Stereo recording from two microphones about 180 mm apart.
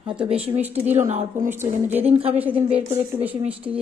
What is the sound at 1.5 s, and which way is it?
Speech, 10° right (ahead or behind).